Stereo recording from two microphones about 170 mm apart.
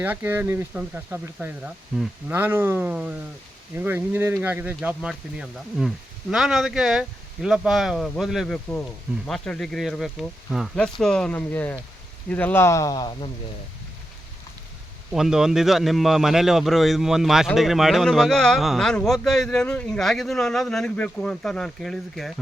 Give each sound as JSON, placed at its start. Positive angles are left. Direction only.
{"t": 0.0, "sound": "a man's voice", "side_deg": -10}
{"t": 15.1, "sound": "a man's voice", "side_deg": 0}